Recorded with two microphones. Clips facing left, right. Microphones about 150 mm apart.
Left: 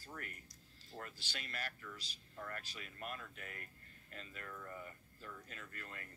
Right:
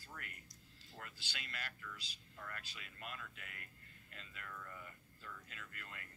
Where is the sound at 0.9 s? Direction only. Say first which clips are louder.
Left 4 dB; 40° left (ahead or behind).